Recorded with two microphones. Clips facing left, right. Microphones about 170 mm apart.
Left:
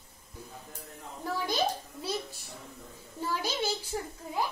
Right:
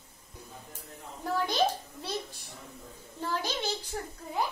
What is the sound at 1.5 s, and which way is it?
Speech, centre (ahead or behind).